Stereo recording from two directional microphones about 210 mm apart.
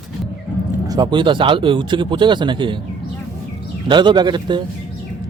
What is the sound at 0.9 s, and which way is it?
Speech, 20° right (ahead or behind).